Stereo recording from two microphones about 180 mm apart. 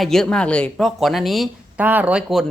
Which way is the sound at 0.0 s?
Centre (ahead or behind).